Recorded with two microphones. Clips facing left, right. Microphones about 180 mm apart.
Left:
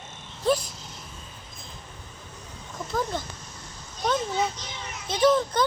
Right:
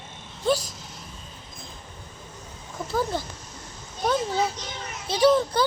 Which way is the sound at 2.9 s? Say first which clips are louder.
Right 2 dB; 5° right (ahead or behind).